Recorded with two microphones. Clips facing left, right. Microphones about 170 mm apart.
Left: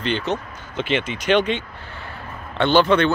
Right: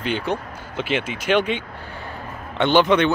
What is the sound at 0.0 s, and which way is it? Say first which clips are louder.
Speech: left 1 dB; 10° right (ahead or behind).